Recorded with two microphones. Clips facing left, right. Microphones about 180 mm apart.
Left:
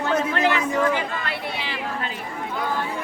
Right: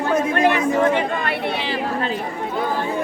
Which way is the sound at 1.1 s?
55° right (ahead or behind).